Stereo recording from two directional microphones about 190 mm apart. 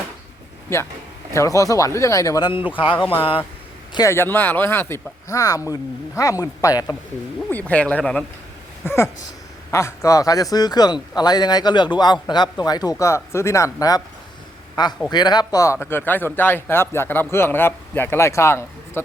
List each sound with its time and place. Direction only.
0.7 s a man's voice: 15° left (ahead or behind)
3.9 s speech: 15° left (ahead or behind)
7.7 s a man's voice: 5° left (ahead or behind)